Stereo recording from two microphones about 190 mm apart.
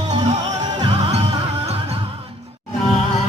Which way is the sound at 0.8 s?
25° right (ahead or behind).